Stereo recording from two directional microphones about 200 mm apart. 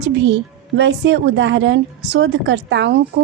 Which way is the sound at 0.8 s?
60° right (ahead or behind).